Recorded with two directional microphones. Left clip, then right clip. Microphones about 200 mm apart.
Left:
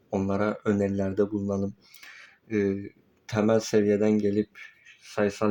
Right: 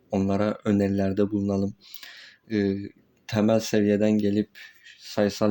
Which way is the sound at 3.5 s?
55° right (ahead or behind).